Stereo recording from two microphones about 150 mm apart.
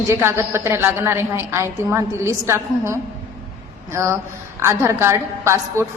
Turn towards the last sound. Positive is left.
turn(degrees=-20)  # may be behind; listen again after turning